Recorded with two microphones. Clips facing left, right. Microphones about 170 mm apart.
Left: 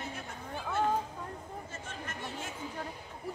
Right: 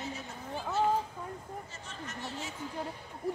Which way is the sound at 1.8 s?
55° left (ahead or behind).